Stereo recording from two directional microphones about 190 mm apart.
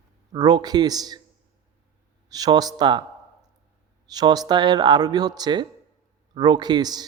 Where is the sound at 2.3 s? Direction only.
20° right (ahead or behind).